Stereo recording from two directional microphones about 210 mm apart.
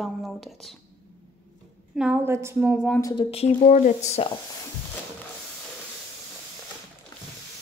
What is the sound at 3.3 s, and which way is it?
Speech, 30° left (ahead or behind).